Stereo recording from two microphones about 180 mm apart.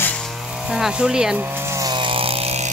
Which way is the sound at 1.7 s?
20° right (ahead or behind).